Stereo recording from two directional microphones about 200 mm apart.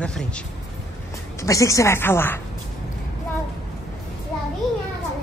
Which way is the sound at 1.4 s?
15° left (ahead or behind).